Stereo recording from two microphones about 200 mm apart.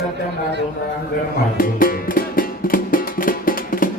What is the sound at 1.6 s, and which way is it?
Music, 45° left (ahead or behind).